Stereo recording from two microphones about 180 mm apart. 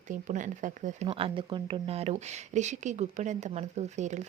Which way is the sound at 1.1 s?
30° right (ahead or behind).